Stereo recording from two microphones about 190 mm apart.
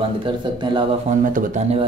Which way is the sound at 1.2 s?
45° right (ahead or behind).